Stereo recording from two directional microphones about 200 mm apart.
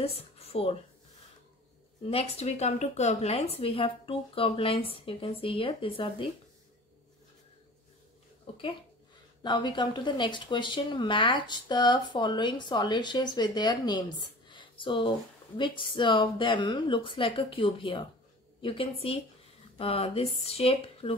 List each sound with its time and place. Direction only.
0.0 s a sound: 30° left (ahead or behind)
2.0 s speech: 30° left (ahead or behind)
9.4 s speech: 20° left (ahead or behind)